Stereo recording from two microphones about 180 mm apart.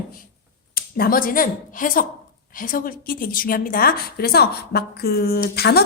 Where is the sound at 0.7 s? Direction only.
55° left (ahead or behind).